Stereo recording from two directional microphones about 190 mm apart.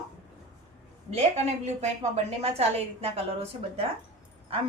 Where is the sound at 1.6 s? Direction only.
35° right (ahead or behind).